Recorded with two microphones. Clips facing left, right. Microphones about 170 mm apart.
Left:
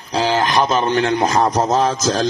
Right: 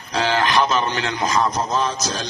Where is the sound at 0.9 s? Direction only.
60° left (ahead or behind); by 1.8 s 80° left.